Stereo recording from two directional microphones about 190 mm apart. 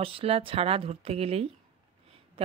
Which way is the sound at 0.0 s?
30° right (ahead or behind).